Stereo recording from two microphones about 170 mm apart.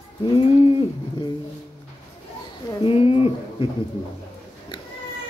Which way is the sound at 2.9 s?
35° left (ahead or behind).